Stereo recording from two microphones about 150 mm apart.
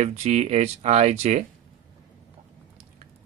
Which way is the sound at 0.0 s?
50° right (ahead or behind).